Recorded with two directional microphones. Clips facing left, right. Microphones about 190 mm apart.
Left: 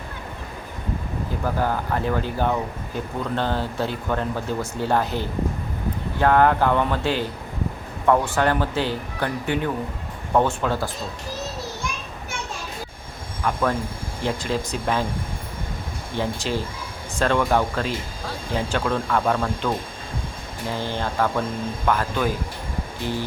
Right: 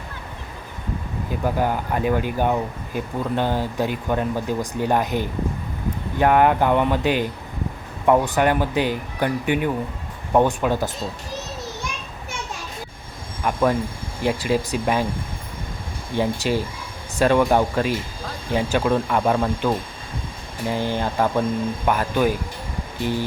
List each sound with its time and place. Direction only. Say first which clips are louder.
1.5 s speech: right 2 dB; 15° right (ahead or behind)
13.4 s speech: right 3 dB; 20° right (ahead or behind)
16.1 s speech: right 4 dB; 15° right (ahead or behind)